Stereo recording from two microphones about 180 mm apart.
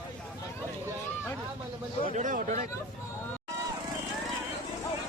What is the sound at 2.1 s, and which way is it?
Speech, 45° right (ahead or behind).